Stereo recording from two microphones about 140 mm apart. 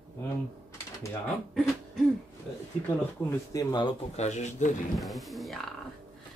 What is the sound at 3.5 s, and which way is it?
Speech, 30° left (ahead or behind).